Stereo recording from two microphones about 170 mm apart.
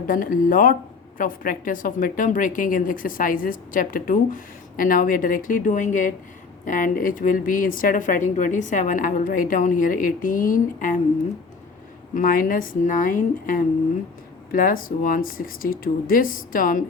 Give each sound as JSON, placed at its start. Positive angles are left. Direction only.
{"t": 0.1, "sound": "speech", "side_deg": 55}
{"t": 12.1, "sound": "speech", "side_deg": 55}